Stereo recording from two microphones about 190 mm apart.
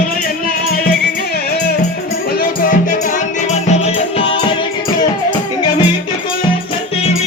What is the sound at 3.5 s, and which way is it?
Music, 35° left (ahead or behind).